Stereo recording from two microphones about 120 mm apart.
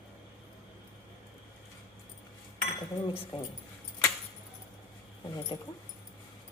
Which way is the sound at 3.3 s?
50° left (ahead or behind).